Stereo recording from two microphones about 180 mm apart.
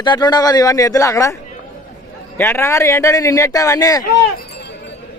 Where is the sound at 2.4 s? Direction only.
15° left (ahead or behind).